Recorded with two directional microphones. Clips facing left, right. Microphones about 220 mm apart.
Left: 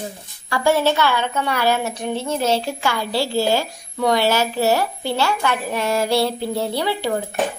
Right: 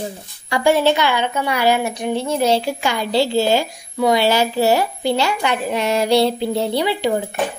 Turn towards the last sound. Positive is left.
turn(degrees=-15)  # may be behind; listen again after turning